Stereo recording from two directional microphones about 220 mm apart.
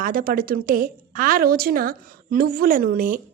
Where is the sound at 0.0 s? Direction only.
40° right (ahead or behind).